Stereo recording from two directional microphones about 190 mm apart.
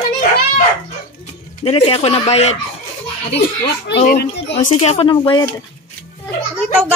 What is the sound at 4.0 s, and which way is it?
Speech, 45° left (ahead or behind).